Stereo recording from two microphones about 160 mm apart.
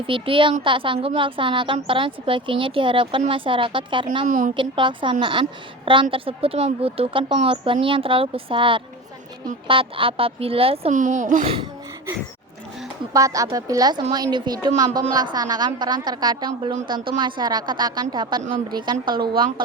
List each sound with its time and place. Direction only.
0.1 s a woman's voice: 30° right (ahead or behind)
4.3 s a woman's voice: 55° right (ahead or behind)
4.5 s a woman's voice: 30° right (ahead or behind)
10.9 s a woman's voice: 50° right (ahead or behind)
11.4 s a woman's voice: 30° right (ahead or behind)
13.1 s a woman's voice: 20° right (ahead or behind)